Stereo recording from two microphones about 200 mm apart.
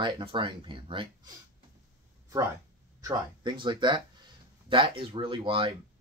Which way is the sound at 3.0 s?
20° right (ahead or behind).